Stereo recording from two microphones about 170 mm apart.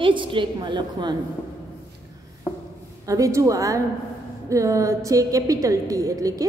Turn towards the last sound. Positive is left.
turn(degrees=-20)  # may be behind; listen again after turning